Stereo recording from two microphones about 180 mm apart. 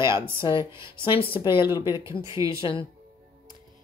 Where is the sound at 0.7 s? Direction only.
15° right (ahead or behind).